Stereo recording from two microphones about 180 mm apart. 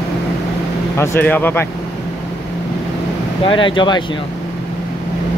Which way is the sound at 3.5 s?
25° left (ahead or behind).